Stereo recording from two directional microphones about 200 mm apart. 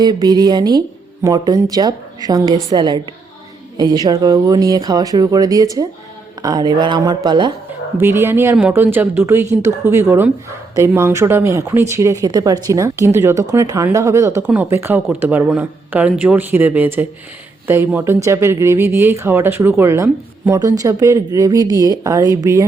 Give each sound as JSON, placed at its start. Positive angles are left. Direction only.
{"t": 0.0, "sound": "speech", "side_deg": -20}
{"t": 8.0, "sound": "speech", "side_deg": -10}